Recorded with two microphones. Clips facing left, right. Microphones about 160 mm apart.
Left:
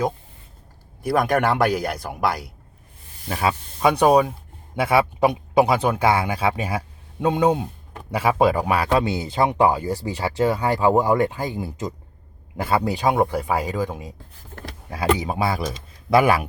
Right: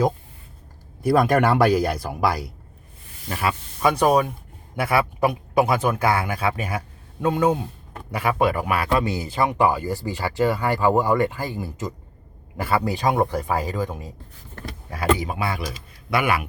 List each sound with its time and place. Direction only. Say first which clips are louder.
1.0 s speech: right 2 dB; centre (ahead or behind)
3.2 s a man's voice: left 2 dB; 15° left (ahead or behind)
15.3 s speech: left 4 dB; 35° left (ahead or behind)